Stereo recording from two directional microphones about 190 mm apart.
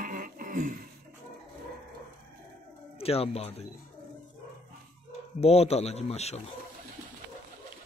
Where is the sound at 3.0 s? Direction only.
30° left (ahead or behind).